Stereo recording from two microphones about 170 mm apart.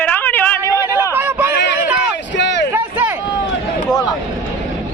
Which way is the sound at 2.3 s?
90° left.